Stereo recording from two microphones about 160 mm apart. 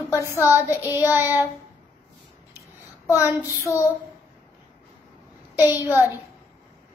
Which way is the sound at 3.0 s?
20° left (ahead or behind).